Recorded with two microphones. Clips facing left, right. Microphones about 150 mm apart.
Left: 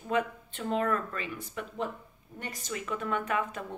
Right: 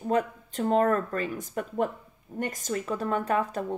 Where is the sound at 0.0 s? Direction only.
40° right (ahead or behind).